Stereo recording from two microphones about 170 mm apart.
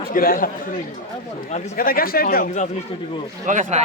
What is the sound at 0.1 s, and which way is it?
Speech, 55° left (ahead or behind).